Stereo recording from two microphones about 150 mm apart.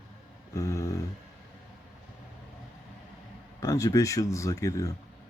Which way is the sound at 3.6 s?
20° left (ahead or behind).